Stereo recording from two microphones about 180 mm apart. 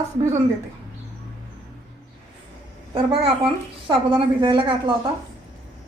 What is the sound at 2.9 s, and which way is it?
A woman's voice, 35° right (ahead or behind).